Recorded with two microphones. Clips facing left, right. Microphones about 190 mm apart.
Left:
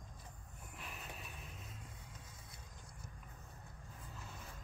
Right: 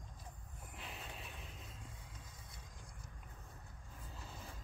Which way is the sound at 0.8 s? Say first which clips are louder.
Right 1 dB; 25° right (ahead or behind).